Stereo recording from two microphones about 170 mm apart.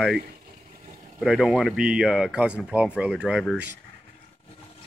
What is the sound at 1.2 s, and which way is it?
Speech, centre (ahead or behind).